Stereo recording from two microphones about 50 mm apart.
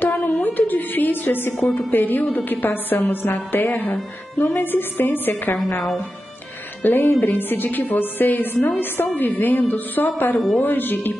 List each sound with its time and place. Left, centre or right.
0.4 s a sound: left
1.7 s a woman's voice: left
6.8 s a woman's voice: left